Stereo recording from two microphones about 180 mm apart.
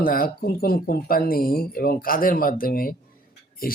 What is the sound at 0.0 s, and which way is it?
Speech, 55° left (ahead or behind).